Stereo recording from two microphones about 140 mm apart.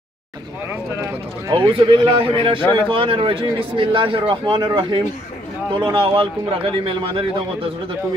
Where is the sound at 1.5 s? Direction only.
35° right (ahead or behind).